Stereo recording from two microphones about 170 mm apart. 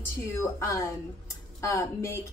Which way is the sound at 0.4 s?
20° left (ahead or behind).